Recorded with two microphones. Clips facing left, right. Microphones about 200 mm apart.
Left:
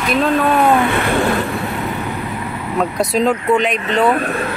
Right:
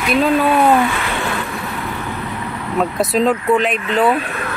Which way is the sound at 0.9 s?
60° left (ahead or behind).